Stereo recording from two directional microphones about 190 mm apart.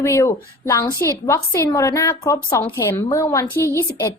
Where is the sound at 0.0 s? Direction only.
15° left (ahead or behind).